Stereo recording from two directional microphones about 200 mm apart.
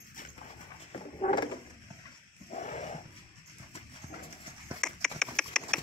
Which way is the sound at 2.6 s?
35° left (ahead or behind).